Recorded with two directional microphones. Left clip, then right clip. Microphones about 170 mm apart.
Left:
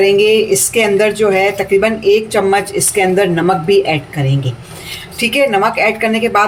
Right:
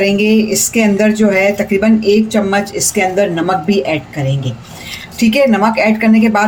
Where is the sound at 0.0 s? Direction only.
25° right (ahead or behind).